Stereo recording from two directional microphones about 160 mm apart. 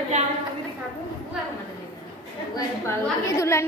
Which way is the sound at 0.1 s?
45° right (ahead or behind).